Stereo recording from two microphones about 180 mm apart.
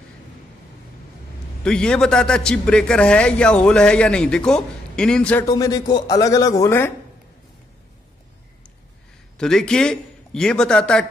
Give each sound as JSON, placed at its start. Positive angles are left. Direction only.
{"t": 1.6, "sound": "a man's voice", "side_deg": 5}
{"t": 5.4, "sound": "speech", "side_deg": 20}
{"t": 9.4, "sound": "a man's voice", "side_deg": 5}